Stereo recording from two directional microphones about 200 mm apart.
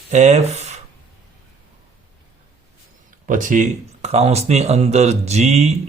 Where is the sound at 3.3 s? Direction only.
40° right (ahead or behind).